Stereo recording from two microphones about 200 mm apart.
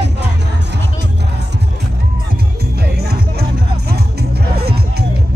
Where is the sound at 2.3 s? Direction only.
50° right (ahead or behind).